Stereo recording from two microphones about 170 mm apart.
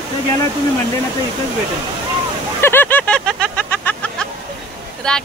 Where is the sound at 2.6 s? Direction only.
15° left (ahead or behind).